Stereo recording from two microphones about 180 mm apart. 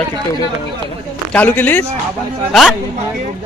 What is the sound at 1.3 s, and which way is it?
Speech, 10° left (ahead or behind).